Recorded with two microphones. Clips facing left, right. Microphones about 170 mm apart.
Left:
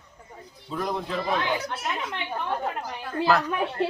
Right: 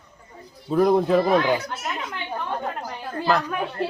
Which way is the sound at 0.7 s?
50° right (ahead or behind).